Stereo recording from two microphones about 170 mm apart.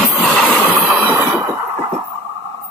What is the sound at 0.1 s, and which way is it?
Vehicle, centre (ahead or behind).